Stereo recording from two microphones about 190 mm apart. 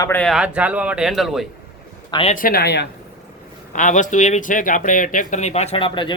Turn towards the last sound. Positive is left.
turn(degrees=25)  # may be behind; listen again after turning